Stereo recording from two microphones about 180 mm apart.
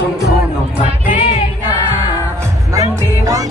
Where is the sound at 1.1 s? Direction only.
40° left (ahead or behind).